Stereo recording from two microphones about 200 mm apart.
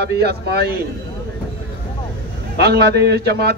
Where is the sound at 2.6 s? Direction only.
55° right (ahead or behind).